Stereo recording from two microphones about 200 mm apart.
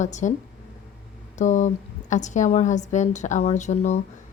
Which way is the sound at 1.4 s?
40° left (ahead or behind).